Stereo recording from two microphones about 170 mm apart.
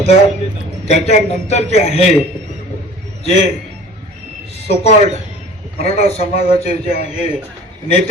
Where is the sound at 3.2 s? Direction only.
40° left (ahead or behind).